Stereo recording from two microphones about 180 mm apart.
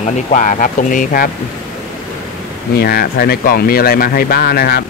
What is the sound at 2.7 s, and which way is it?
Speech, 60° left (ahead or behind).